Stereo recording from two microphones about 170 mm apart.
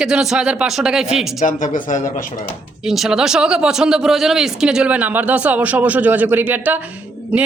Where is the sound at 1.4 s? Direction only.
50° left (ahead or behind).